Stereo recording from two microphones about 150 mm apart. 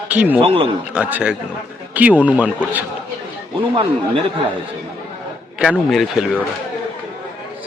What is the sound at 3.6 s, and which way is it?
Speech, 35° right (ahead or behind).